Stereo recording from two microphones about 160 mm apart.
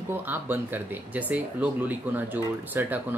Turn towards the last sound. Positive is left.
turn(degrees=-10)  # may be behind; listen again after turning